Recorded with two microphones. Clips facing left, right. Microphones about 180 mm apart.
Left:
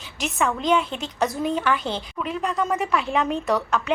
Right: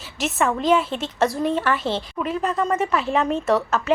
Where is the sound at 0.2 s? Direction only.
Centre (ahead or behind).